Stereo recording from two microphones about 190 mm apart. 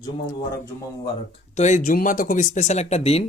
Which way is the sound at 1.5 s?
40° left (ahead or behind).